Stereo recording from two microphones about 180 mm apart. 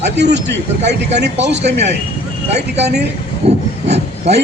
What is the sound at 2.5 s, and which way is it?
Speech, 35° right (ahead or behind).